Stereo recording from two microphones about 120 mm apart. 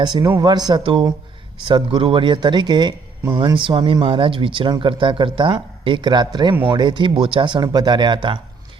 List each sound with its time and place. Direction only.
0.0 s speech: 35° right (ahead or behind)
0.7 s speech: 45° right (ahead or behind)